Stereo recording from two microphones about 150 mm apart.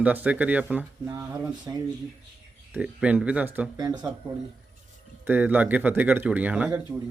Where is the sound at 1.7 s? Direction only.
25° right (ahead or behind).